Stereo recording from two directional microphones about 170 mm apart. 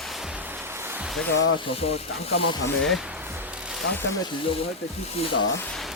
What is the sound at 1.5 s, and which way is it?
Speech, 35° left (ahead or behind).